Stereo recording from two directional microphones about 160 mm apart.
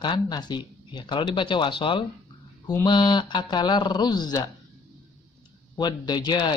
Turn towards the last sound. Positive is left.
turn(degrees=25)  # may be behind; listen again after turning